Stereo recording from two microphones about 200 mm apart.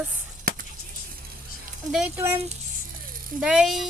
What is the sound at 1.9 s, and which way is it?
Speech, 5° right (ahead or behind).